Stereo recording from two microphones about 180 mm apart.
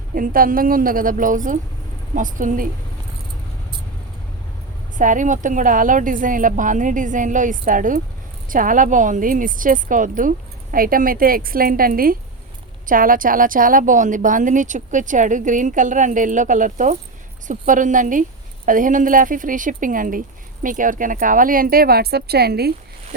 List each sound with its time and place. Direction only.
0.1 s a woman's voice: 50° right (ahead or behind)
4.9 s a woman's voice: 45° right (ahead or behind); by 22.7 s 60° right (ahead or behind)